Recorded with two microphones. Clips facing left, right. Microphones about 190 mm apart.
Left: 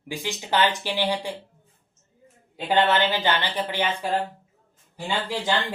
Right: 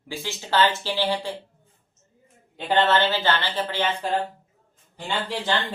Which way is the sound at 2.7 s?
15° left (ahead or behind).